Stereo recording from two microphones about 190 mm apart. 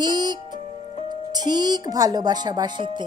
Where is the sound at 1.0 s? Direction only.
20° right (ahead or behind).